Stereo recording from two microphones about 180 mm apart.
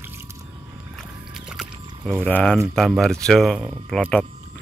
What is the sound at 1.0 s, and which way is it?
Squish, centre (ahead or behind).